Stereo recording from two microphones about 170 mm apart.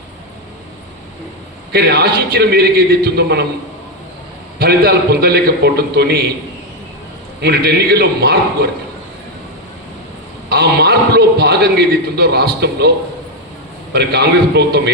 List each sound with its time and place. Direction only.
1.7 s a man's voice: 75° right (ahead or behind)
4.6 s a man's voice: 70° right (ahead or behind)
7.4 s a man's voice: 70° right (ahead or behind)
10.5 s a man's voice: 75° right (ahead or behind)
13.9 s a man's voice: 80° right